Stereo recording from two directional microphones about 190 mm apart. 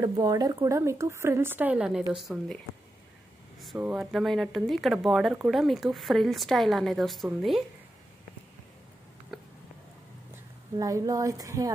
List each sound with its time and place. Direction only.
0.0 s a woman's voice: 20° right (ahead or behind); by 2.6 s centre (ahead or behind)
3.7 s speech: 5° right (ahead or behind)
10.8 s a woman's voice: 20° right (ahead or behind)